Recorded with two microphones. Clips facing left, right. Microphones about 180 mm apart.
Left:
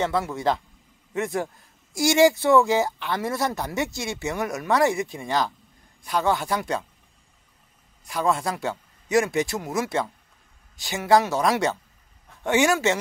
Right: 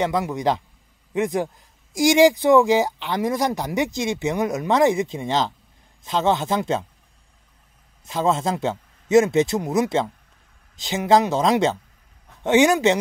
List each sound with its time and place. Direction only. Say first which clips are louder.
0.0 s a man's voice: right 2 dB; 15° right (ahead or behind)
8.0 s speech: right 3 dB; 20° right (ahead or behind)